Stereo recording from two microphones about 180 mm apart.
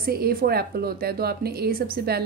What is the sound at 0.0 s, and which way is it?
Speech, 55° right (ahead or behind).